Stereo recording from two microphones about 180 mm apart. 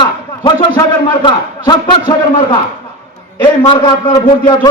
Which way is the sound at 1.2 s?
25° left (ahead or behind).